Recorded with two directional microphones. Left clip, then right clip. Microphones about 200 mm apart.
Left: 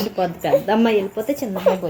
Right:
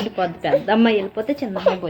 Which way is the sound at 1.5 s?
5° right (ahead or behind).